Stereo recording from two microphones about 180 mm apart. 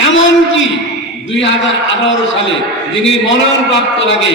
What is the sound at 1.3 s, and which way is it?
Speech, 90° left.